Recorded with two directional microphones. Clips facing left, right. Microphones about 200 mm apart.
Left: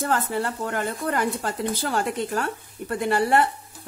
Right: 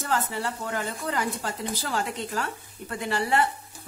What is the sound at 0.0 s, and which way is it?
A woman's voice, 55° left (ahead or behind).